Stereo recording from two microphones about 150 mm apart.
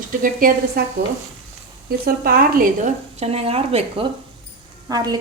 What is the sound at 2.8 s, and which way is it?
Speech, 45° right (ahead or behind).